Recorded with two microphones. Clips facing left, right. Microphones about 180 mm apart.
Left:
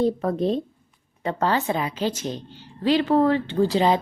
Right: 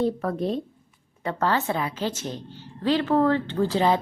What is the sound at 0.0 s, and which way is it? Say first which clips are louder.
A woman's voice: left 3 dB; 20° left (ahead or behind).